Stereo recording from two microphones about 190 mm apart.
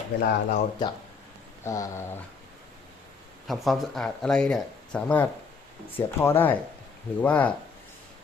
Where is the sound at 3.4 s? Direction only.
Centre (ahead or behind).